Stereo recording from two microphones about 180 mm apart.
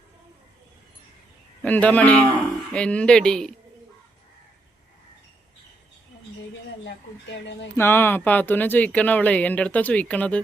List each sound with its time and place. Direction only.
1.6 s speech: 10° left (ahead or behind)
6.8 s speech: 80° left
7.8 s speech: 15° left (ahead or behind)